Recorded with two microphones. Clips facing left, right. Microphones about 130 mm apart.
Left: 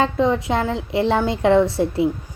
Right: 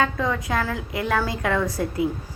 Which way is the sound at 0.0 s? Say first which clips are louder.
Left 5 dB; 25° left (ahead or behind).